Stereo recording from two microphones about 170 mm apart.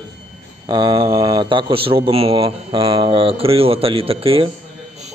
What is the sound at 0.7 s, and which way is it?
A man's voice, 25° right (ahead or behind).